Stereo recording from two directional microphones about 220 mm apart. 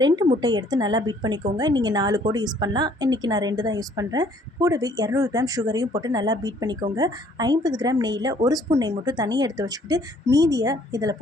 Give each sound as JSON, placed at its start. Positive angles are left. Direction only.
{"t": 0.4, "sound": "a woman's voice", "side_deg": -20}